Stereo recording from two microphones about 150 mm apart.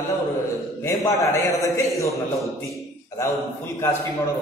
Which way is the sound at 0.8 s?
20° left (ahead or behind).